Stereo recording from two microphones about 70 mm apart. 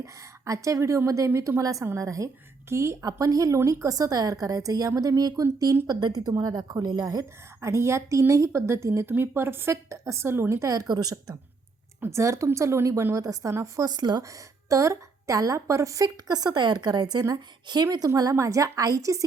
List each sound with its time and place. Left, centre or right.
0.0 s a woman's voice: right
3.0 s a woman's voice: right
5.9 s a woman's voice: right
7.6 s a woman's voice: right
9.9 s a woman's voice: right
10.6 s a woman's voice: right
12.1 s a woman's voice: right
13.8 s a woman's voice: right
14.2 s a woman's voice: right
16.0 s a woman's voice: right
18.2 s a woman's voice: right